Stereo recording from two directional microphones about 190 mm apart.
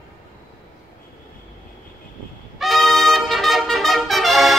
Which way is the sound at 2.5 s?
Centre (ahead or behind).